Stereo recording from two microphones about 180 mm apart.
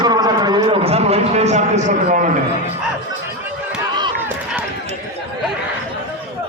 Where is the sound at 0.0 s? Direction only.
20° right (ahead or behind); by 2.4 s 45° right (ahead or behind).